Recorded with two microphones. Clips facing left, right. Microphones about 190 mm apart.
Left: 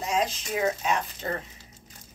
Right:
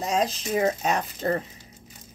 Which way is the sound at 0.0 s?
40° right (ahead or behind).